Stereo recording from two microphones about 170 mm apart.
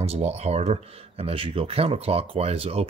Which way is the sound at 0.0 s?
35° right (ahead or behind).